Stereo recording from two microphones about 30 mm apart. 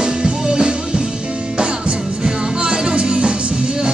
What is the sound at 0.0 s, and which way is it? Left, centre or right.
Music, right.